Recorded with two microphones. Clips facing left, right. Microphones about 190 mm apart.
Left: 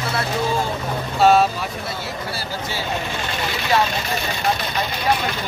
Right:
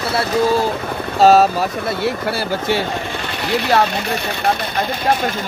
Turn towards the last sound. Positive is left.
turn(degrees=-60)  # may be behind; listen again after turning